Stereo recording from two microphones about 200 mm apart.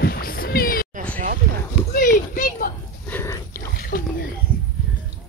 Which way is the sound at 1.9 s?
45° left (ahead or behind).